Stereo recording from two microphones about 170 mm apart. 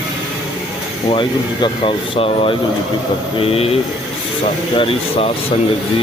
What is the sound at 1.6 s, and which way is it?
Speech, 35° left (ahead or behind).